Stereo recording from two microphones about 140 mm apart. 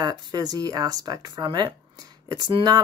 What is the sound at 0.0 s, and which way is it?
Speech, 30° right (ahead or behind).